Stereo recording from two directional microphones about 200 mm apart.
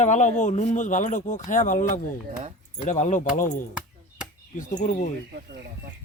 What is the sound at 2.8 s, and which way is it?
Speech, 35° left (ahead or behind).